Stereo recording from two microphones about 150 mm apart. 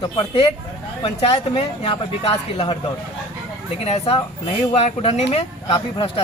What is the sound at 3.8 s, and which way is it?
Speech, 40° left (ahead or behind).